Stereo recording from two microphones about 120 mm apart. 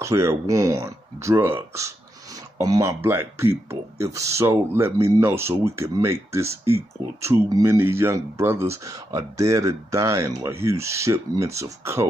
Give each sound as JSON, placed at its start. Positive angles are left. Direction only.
{"t": 0.0, "sound": "speech", "side_deg": -25}